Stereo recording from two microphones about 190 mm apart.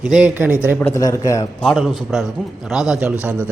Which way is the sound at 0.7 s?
15° left (ahead or behind).